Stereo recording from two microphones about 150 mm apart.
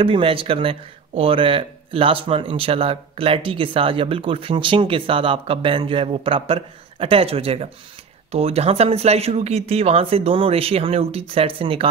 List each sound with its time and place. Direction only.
0.0 s speech: 35° right (ahead or behind)